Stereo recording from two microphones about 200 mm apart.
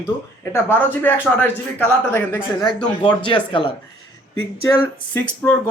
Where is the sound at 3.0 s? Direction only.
25° left (ahead or behind).